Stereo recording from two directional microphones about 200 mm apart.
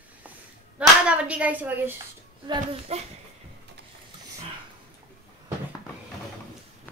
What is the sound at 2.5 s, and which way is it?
Speech, 30° right (ahead or behind).